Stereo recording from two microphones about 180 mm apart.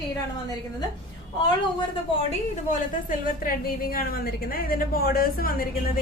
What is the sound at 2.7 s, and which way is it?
A woman's voice, 50° left (ahead or behind).